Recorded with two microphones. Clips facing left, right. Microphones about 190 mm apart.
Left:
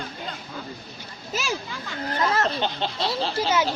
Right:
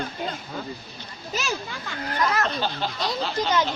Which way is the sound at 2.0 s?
30° left (ahead or behind).